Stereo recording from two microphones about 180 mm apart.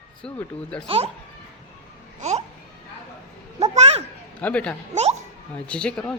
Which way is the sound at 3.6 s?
35° right (ahead or behind).